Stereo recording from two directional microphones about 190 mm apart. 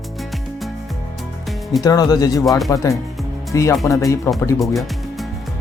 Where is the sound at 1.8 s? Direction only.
20° left (ahead or behind).